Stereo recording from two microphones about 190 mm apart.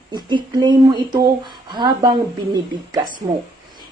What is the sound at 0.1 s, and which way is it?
A woman's voice, 25° right (ahead or behind).